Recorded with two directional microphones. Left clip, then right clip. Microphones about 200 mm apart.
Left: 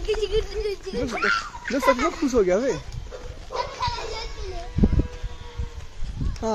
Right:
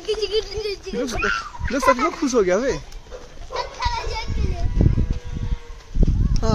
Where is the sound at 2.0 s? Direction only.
5° right (ahead or behind).